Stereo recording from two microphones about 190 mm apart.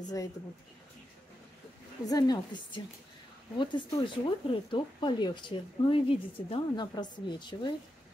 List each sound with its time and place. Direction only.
2.0 s speech: 20° left (ahead or behind)